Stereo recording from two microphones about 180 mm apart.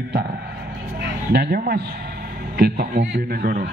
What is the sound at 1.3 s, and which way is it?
A man's voice, 60° right (ahead or behind).